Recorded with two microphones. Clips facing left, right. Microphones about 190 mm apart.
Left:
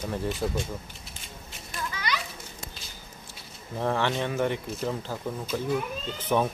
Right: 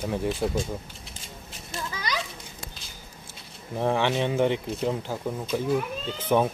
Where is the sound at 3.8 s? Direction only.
15° right (ahead or behind).